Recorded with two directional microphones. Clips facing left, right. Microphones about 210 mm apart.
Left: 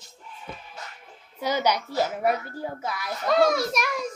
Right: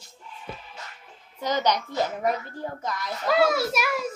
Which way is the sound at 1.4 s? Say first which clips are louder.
Even; 10° left (ahead or behind).